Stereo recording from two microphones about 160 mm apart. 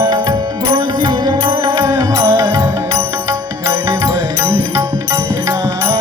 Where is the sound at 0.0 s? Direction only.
25° right (ahead or behind).